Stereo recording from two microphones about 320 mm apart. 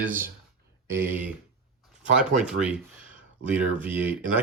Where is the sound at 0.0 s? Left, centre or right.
Centre.